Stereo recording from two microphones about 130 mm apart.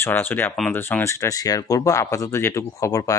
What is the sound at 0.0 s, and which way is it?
Speech, 15° left (ahead or behind).